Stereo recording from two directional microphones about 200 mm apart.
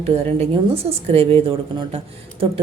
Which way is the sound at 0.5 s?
30° right (ahead or behind).